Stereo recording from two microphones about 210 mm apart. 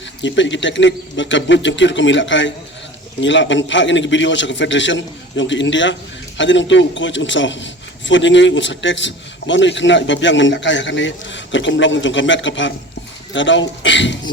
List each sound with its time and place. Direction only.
0.2 s a man's voice: 60° left (ahead or behind)